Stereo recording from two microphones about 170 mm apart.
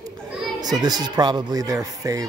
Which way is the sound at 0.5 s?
25° right (ahead or behind).